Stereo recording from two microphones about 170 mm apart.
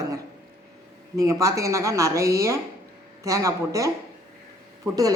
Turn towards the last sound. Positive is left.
turn(degrees=-20)  # may be behind; listen again after turning